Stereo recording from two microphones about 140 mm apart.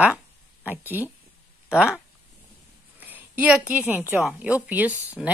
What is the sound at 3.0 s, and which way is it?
A woman's voice, 15° right (ahead or behind).